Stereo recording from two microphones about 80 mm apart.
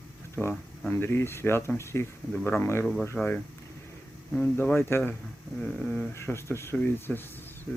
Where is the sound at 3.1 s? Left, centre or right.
Left.